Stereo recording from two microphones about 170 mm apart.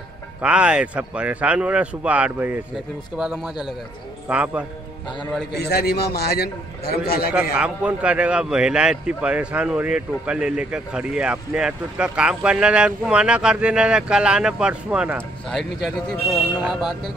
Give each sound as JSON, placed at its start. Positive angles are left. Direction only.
{"t": 0.4, "sound": "a man's voice", "side_deg": -5}
{"t": 5.2, "sound": "a man's voice", "side_deg": 5}
{"t": 5.5, "sound": "a man's voice", "side_deg": 70}
{"t": 7.5, "sound": "a man's voice", "side_deg": -5}